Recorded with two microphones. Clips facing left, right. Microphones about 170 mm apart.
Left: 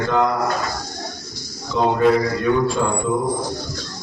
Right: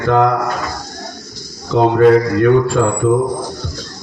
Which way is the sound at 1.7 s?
60° right (ahead or behind).